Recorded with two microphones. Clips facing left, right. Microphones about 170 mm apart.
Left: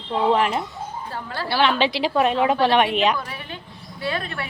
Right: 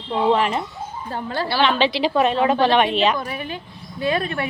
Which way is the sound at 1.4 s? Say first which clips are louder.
Even; 5° left (ahead or behind).